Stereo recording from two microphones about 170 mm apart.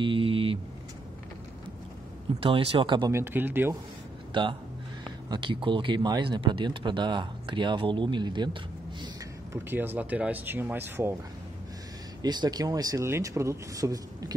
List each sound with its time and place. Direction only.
0.0 s vehicle: 30° right (ahead or behind)
2.4 s speech: 35° right (ahead or behind)
3.1 s speech: 15° right (ahead or behind)
4.3 s speech: 30° right (ahead or behind)
9.0 s speech: 15° right (ahead or behind)
12.2 s speech: 25° right (ahead or behind)